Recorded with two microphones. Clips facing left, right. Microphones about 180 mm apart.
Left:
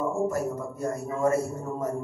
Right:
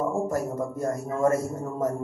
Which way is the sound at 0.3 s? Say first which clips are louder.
Right 2 dB; 45° right (ahead or behind).